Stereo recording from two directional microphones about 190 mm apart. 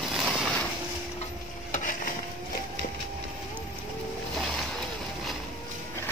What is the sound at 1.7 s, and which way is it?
Stir, 45° left (ahead or behind).